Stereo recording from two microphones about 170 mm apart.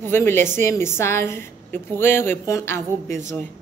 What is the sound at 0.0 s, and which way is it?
A woman's voice, 15° left (ahead or behind).